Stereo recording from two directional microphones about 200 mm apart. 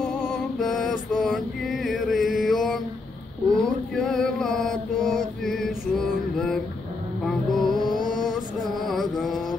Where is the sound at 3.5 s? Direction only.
Centre (ahead or behind).